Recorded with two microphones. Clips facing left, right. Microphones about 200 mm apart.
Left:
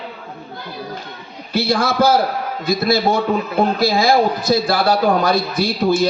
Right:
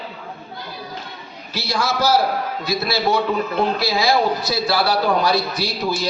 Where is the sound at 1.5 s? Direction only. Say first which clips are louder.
Left 6 dB; 55° left (ahead or behind).